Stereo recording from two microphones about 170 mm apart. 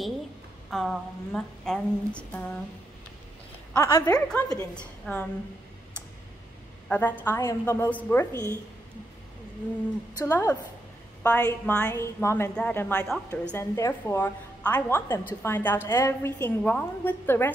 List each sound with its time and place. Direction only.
0.7 s a sound: 5° left (ahead or behind)
3.7 s speech: 20° left (ahead or behind)
4.3 s a sound: 5° left (ahead or behind)
4.7 s a woman's voice: 5° left (ahead or behind)
6.9 s a woman's voice: 10° left (ahead or behind)
10.1 s a woman's voice: 15° left (ahead or behind)